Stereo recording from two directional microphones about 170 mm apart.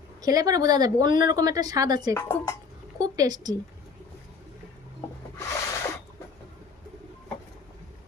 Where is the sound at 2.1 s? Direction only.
15° left (ahead or behind).